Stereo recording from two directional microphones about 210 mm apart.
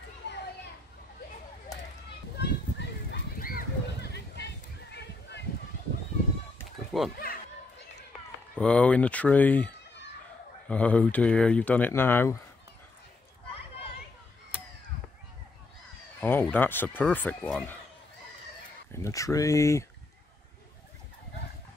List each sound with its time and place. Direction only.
0.2 s children playing: 55° left (ahead or behind)
2.3 s a sound: 55° left (ahead or behind)
6.9 s speech: centre (ahead or behind)
8.5 s speech: 5° left (ahead or behind)
10.7 s speech: 5° left (ahead or behind)
16.2 s speech: 10° left (ahead or behind)
19.0 s speech: 15° left (ahead or behind)